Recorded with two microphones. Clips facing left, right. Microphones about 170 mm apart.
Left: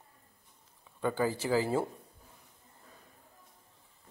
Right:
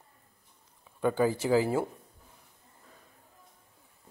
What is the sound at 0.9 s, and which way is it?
Speech, 15° right (ahead or behind).